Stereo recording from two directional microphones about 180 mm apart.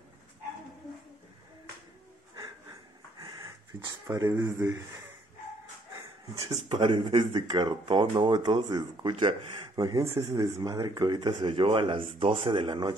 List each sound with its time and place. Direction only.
3.2 s speech: 20° right (ahead or behind)
6.7 s speech: 25° right (ahead or behind)